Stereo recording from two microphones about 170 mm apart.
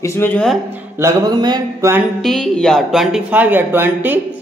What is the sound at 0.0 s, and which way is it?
Speech, 15° left (ahead or behind).